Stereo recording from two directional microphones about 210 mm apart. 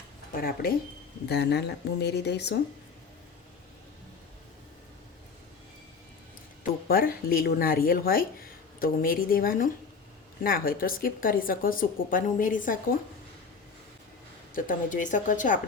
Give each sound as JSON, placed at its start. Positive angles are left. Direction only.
{"t": 0.3, "sound": "speech", "side_deg": 45}
{"t": 6.8, "sound": "speech", "side_deg": 45}
{"t": 14.5, "sound": "a woman's voice", "side_deg": 40}